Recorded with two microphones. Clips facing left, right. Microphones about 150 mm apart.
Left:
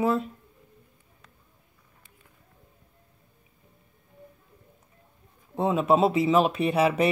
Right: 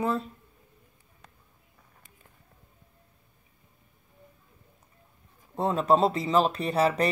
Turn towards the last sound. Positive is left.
turn(degrees=5)  # may be behind; listen again after turning